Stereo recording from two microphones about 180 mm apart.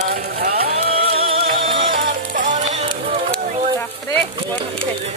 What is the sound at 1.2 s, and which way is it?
Music, 30° right (ahead or behind).